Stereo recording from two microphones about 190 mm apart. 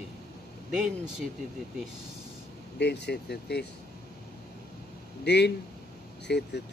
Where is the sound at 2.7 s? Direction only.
65° left (ahead or behind).